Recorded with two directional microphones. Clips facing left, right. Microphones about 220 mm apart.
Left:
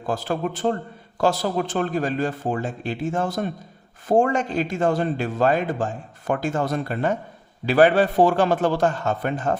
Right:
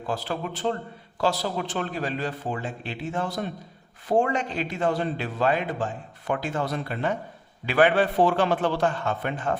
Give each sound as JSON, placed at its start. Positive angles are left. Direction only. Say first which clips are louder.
{"t": 0.0, "sound": "a man's voice", "louder": "left 5 dB", "side_deg": 45}